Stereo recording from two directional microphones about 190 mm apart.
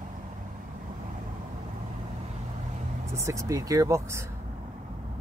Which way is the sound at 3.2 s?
15° right (ahead or behind).